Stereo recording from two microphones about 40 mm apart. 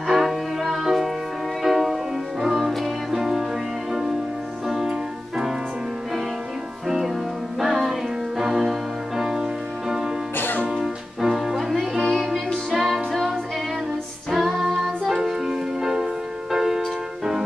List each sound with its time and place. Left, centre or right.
0.1 s music: centre
7.6 s music: centre
10.3 s music: left
10.8 s music: centre
14.3 s female singing: centre
14.7 s music: centre